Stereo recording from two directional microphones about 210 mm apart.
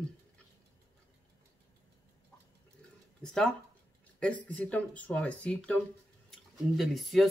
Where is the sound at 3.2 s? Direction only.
5° left (ahead or behind).